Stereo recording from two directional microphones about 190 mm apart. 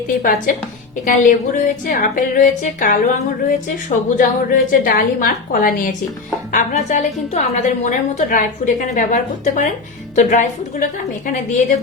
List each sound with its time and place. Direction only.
0.2 s a woman's voice: 45° left (ahead or behind)